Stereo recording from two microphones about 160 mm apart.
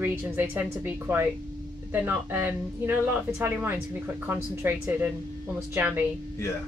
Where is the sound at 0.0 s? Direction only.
10° right (ahead or behind).